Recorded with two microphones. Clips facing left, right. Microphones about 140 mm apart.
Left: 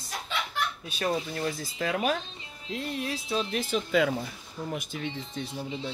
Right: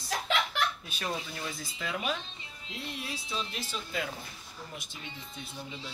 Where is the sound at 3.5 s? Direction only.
55° left (ahead or behind).